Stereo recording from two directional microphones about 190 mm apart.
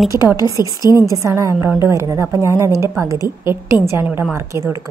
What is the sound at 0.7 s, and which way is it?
Speech, 20° left (ahead or behind).